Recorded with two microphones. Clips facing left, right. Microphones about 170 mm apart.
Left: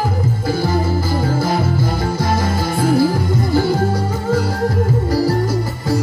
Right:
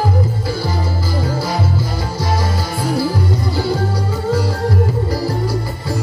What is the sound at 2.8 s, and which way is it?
Music, 50° left (ahead or behind).